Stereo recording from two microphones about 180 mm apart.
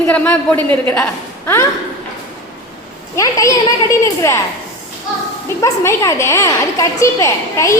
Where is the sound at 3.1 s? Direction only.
20° left (ahead or behind).